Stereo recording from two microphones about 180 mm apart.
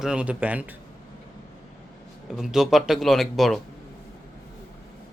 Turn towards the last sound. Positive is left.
turn(degrees=0)  # may be behind; listen again after turning